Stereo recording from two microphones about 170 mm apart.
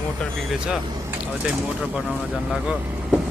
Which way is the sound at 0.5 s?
5° right (ahead or behind).